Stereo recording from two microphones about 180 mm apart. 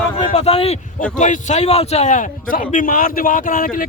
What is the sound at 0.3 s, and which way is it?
Speech, 35° left (ahead or behind).